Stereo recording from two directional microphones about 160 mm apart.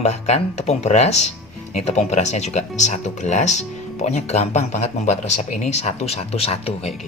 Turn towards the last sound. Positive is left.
turn(degrees=40)  # may be behind; listen again after turning